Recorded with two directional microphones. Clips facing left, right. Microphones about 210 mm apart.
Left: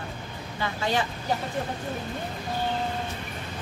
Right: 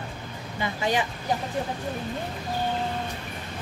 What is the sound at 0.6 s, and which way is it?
Speech, 15° right (ahead or behind).